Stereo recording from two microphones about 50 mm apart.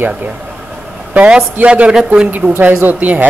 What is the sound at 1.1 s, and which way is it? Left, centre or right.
Speech, right.